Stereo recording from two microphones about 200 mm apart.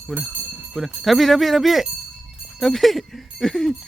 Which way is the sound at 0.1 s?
Centre (ahead or behind).